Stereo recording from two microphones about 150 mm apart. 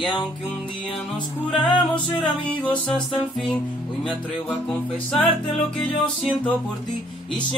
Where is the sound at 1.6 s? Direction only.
30° left (ahead or behind).